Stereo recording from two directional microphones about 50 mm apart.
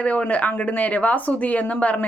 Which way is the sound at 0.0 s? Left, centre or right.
Left.